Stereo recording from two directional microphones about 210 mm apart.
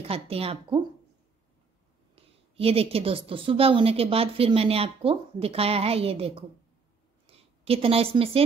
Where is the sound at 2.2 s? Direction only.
30° right (ahead or behind).